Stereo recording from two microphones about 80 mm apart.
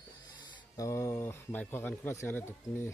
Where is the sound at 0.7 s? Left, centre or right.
Left.